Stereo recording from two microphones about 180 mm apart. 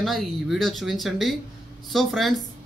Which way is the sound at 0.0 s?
Centre (ahead or behind).